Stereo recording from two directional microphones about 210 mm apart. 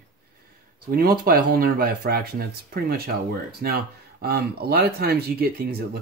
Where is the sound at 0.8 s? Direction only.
45° right (ahead or behind).